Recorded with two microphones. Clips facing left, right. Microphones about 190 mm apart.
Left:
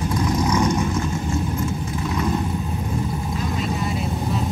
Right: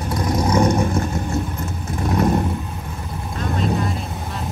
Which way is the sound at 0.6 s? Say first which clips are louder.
Right 3 dB; 55° right (ahead or behind).